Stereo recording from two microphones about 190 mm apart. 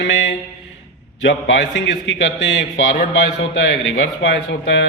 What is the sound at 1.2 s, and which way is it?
A man's voice, 75° left (ahead or behind).